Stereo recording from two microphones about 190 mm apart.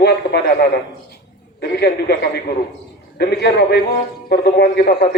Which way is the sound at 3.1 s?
55° left (ahead or behind).